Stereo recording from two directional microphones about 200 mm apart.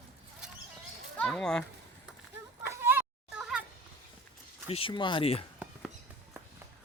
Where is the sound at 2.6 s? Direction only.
10° right (ahead or behind).